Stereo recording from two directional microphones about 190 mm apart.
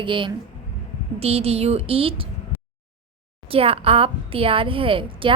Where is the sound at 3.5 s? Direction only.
30° right (ahead or behind).